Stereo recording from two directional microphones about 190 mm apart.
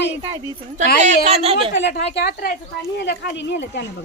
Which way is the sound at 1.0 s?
35° right (ahead or behind).